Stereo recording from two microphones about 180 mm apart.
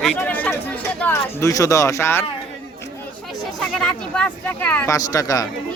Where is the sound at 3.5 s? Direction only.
5° left (ahead or behind); by 5.4 s 20° left (ahead or behind).